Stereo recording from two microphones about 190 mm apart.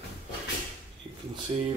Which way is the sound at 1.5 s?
20° right (ahead or behind).